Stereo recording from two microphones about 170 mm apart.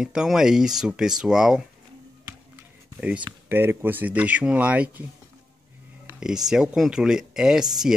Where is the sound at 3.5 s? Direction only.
15° right (ahead or behind).